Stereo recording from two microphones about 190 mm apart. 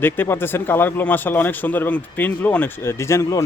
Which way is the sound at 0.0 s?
10° left (ahead or behind).